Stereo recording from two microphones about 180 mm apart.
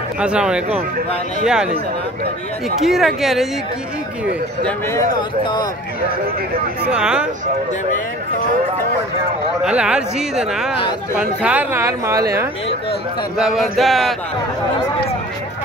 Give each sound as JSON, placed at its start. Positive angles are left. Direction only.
{"t": 0.2, "sound": "speech", "side_deg": -5}
{"t": 2.8, "sound": "speech", "side_deg": 0}
{"t": 5.4, "sound": "speech", "side_deg": 25}
{"t": 6.9, "sound": "speech", "side_deg": -5}
{"t": 9.7, "sound": "speech", "side_deg": -5}
{"t": 13.4, "sound": "speech", "side_deg": 0}